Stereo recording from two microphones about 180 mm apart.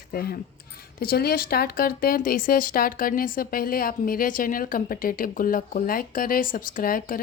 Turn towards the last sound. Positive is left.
turn(degrees=50)  # may be behind; listen again after turning